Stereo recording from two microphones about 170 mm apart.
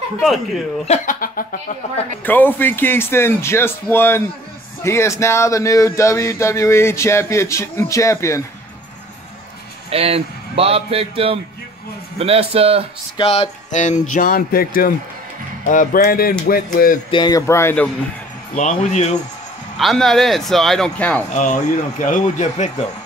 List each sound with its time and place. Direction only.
0.8 s speech: 45° left (ahead or behind)
2.2 s speech: 10° left (ahead or behind)
9.8 s a man's voice: 35° right (ahead or behind)
13.2 s speech: 35° left (ahead or behind); by 17.0 s 55° left (ahead or behind)
17.1 s speech: 25° left (ahead or behind)
18.6 s speech: 45° left (ahead or behind)
19.8 s a man's voice: centre (ahead or behind)
21.3 s speech: 45° left (ahead or behind)